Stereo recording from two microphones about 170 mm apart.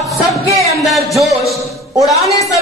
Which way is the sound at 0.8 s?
Centre (ahead or behind).